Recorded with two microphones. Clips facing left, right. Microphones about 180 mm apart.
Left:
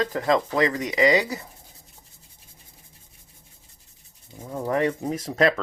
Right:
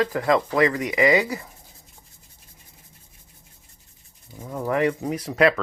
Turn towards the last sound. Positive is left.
turn(degrees=30)  # may be behind; listen again after turning